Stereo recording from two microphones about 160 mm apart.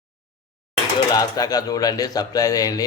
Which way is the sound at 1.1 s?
25° left (ahead or behind).